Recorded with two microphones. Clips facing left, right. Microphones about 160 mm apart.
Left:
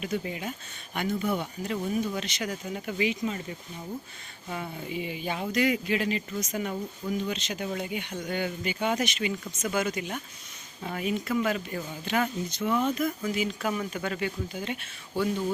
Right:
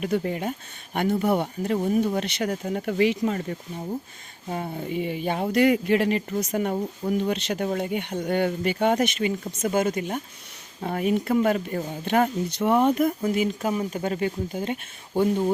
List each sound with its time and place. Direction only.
0.0 s speech: 50° right (ahead or behind)
0.9 s speech: 60° right (ahead or behind)
4.4 s speech: 45° right (ahead or behind)
12.5 s speech: 65° right (ahead or behind); by 13.7 s 50° right (ahead or behind)
13.7 s speech: 35° right (ahead or behind); by 15.5 s 50° right (ahead or behind)